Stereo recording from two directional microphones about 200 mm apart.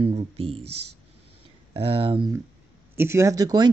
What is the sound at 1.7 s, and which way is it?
Speech, 30° right (ahead or behind).